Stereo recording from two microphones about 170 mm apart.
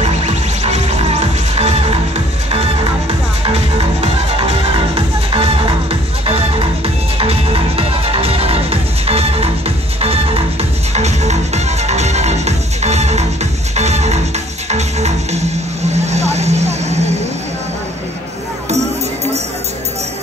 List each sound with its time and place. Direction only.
0.0 s music: 40° right (ahead or behind)
15.9 s vehicle: 40° right (ahead or behind)